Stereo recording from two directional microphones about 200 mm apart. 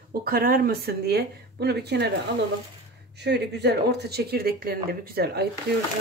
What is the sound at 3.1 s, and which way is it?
Speech, 55° right (ahead or behind).